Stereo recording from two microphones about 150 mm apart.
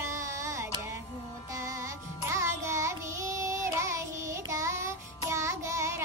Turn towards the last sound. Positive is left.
turn(degrees=-20)  # may be behind; listen again after turning